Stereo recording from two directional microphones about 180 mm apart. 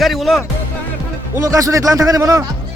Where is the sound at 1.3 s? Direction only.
20° right (ahead or behind).